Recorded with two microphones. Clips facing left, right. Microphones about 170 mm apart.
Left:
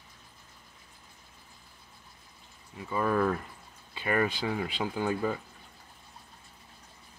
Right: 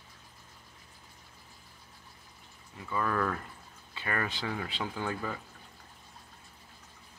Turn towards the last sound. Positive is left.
turn(degrees=20)  # may be behind; listen again after turning